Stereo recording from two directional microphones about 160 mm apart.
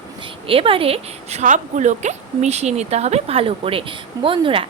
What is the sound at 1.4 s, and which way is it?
A woman's voice, 50° right (ahead or behind).